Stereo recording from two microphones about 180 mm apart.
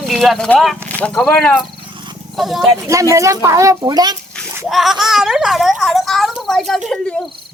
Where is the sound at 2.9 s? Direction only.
15° right (ahead or behind).